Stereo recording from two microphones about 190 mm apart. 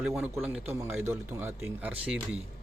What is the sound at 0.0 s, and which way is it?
A man's voice, 5° right (ahead or behind).